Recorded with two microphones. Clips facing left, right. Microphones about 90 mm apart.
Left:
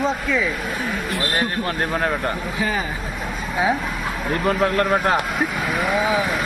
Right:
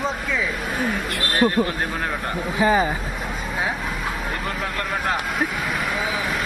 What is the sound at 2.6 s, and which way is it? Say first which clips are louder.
Speech: right 7 dB; 25° right (ahead or behind).